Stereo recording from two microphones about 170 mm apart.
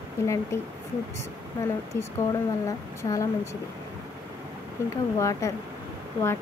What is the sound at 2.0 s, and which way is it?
Speech, 20° left (ahead or behind).